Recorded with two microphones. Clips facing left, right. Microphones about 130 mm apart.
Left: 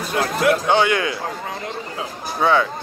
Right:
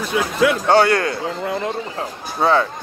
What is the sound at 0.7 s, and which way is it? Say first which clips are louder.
Speech: right 3 dB; 45° right (ahead or behind).